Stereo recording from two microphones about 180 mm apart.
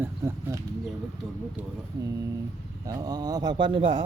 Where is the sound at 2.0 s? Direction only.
20° right (ahead or behind).